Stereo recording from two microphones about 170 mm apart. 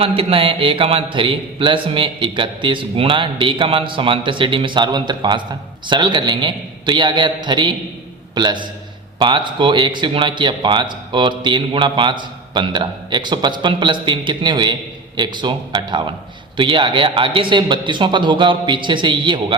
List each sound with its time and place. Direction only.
0.0 s speech: 35° right (ahead or behind)